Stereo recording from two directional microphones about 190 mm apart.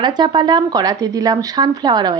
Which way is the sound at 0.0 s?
25° right (ahead or behind).